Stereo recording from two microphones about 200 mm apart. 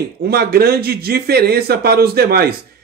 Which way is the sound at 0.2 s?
50° right (ahead or behind).